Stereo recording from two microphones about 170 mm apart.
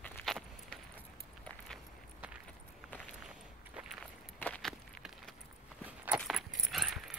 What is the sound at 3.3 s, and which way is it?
Walk, 5° right (ahead or behind).